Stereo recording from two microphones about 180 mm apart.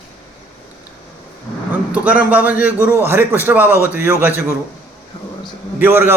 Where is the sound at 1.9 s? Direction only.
10° right (ahead or behind).